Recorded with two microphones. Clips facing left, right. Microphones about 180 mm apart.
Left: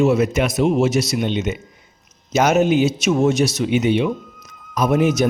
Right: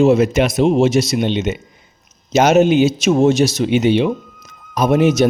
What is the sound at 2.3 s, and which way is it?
Speech, 85° right.